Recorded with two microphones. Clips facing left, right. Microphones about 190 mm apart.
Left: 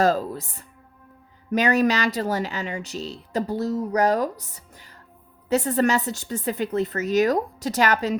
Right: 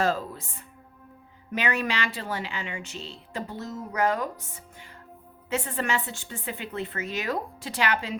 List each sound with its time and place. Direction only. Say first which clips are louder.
0.0 s speech: left 6 dB; 40° left (ahead or behind)